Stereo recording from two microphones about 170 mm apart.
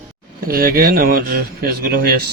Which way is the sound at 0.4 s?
60° right (ahead or behind).